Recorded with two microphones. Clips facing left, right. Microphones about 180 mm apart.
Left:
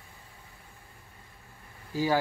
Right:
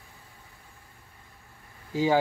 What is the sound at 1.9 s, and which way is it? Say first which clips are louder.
Speech: right 3 dB; 20° right (ahead or behind).